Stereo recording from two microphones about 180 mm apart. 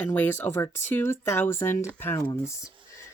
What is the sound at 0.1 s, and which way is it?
Speech, 10° left (ahead or behind).